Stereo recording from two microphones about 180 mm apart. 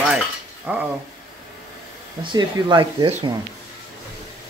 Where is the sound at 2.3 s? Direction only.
25° right (ahead or behind).